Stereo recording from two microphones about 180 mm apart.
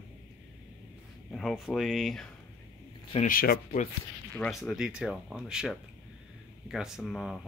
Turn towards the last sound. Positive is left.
turn(degrees=0)  # may be behind; listen again after turning